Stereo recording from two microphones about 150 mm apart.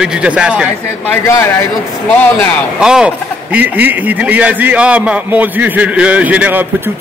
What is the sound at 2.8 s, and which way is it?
A man's voice, 5° right (ahead or behind).